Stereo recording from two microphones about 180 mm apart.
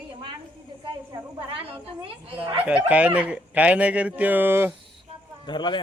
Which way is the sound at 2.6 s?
5° right (ahead or behind).